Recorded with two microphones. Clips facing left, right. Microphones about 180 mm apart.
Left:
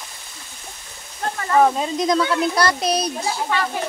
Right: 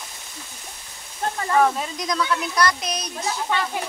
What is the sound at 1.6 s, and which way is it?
Speech, 25° left (ahead or behind).